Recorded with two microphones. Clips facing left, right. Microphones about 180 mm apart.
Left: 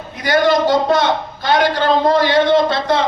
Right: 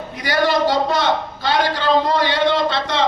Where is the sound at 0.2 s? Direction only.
50° left (ahead or behind).